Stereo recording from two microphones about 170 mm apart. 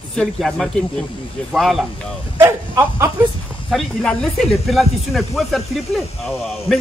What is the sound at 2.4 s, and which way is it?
Speech, 15° right (ahead or behind).